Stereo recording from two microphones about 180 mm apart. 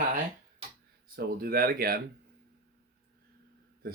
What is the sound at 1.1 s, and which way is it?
Speech, 55° right (ahead or behind).